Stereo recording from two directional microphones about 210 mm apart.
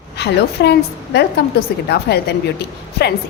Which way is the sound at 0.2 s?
50° left (ahead or behind).